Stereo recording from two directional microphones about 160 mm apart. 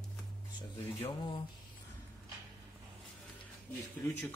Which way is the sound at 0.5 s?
30° left (ahead or behind).